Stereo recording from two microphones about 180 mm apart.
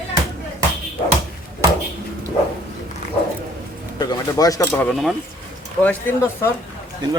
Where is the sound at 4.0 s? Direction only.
20° left (ahead or behind).